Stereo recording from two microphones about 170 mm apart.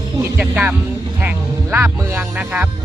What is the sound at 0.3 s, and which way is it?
Speech, 5° right (ahead or behind).